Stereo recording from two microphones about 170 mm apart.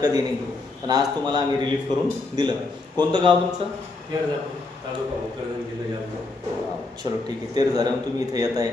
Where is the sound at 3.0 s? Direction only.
25° right (ahead or behind).